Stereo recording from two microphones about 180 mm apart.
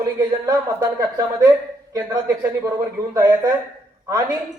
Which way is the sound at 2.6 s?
15° right (ahead or behind).